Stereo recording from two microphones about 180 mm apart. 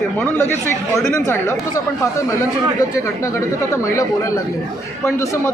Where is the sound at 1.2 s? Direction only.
15° left (ahead or behind).